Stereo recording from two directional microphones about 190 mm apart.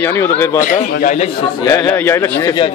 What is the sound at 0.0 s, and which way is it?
Speech, 15° left (ahead or behind).